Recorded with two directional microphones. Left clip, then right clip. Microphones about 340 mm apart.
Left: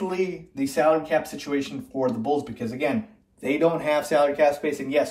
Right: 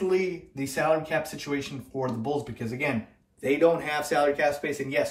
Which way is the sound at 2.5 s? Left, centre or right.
Centre.